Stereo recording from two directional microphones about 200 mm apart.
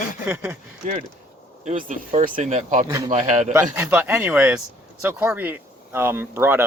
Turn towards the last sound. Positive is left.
turn(degrees=-10)  # may be behind; listen again after turning